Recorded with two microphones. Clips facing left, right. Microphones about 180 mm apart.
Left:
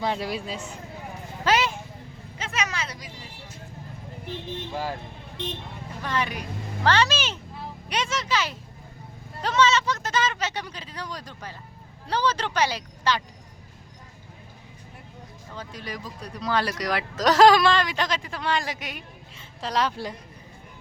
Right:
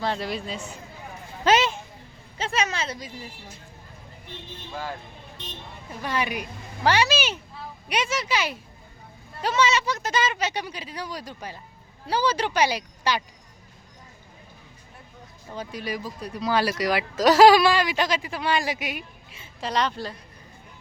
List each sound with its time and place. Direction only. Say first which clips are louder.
0.0 s a man's voice: even; 10° left (ahead or behind)
1.5 s a sound: right 3 dB; 20° right (ahead or behind)
2.4 s speech: right 4 dB; 30° right (ahead or behind)
6.0 s speech: right 1 dB; 10° right (ahead or behind)
15.5 s speech: right 5 dB; 10° right (ahead or behind)
19.7 s a man's voice: even; 5° left (ahead or behind)